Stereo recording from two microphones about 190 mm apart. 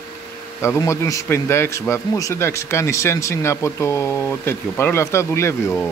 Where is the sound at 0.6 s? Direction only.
15° left (ahead or behind).